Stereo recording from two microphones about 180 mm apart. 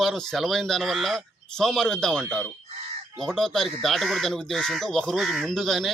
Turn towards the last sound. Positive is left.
turn(degrees=0)  # may be behind; listen again after turning